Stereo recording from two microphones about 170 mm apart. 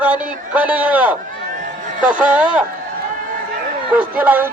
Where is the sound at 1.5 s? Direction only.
50° right (ahead or behind).